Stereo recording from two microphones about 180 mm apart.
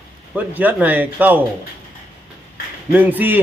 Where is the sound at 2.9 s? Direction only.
10° right (ahead or behind).